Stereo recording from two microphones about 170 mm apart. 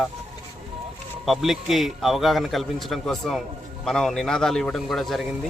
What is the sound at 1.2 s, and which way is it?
A man's voice, centre (ahead or behind).